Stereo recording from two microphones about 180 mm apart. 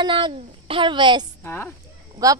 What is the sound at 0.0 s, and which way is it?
A woman's voice, 30° right (ahead or behind).